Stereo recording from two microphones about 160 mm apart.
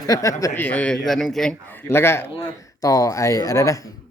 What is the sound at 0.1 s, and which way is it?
A man's voice, 20° left (ahead or behind).